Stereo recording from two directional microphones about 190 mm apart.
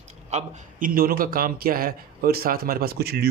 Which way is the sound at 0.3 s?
40° right (ahead or behind).